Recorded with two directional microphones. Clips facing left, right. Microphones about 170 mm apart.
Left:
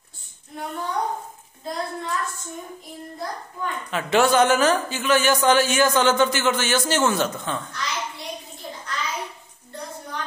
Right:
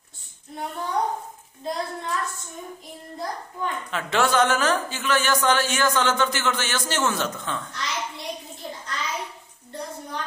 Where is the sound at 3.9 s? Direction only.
10° left (ahead or behind).